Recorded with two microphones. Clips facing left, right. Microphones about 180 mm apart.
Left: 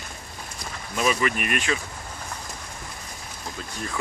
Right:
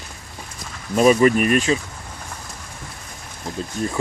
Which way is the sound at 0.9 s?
40° right (ahead or behind).